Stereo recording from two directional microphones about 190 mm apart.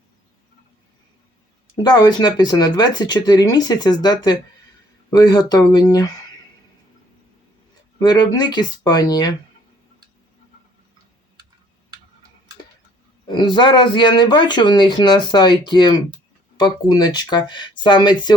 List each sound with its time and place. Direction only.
1.7 s speech: 20° left (ahead or behind)
7.9 s speech: 20° left (ahead or behind)
13.2 s speech: 25° left (ahead or behind)